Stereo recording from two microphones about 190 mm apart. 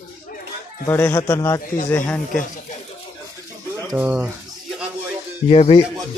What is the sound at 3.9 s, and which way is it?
Speech, 10° right (ahead or behind).